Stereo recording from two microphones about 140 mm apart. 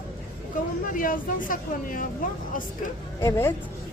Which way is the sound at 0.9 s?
75° left (ahead or behind).